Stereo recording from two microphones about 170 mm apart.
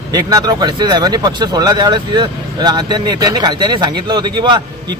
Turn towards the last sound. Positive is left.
turn(degrees=-25)  # may be behind; listen again after turning